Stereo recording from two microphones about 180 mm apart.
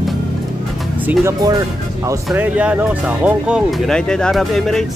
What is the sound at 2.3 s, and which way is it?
Speech, 10° right (ahead or behind).